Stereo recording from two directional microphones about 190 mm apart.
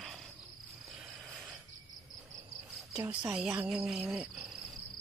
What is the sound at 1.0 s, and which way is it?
Cricket, centre (ahead or behind).